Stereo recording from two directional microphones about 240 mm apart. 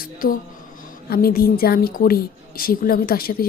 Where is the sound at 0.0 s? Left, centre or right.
Left.